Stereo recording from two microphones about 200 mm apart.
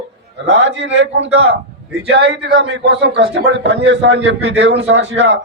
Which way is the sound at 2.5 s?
60° right (ahead or behind).